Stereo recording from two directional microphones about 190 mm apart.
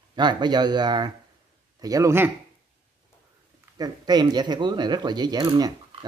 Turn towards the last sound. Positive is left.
turn(degrees=-20)  # may be behind; listen again after turning